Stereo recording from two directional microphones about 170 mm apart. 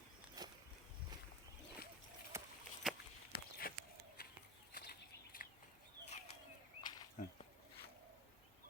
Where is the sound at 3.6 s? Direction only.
60° left (ahead or behind).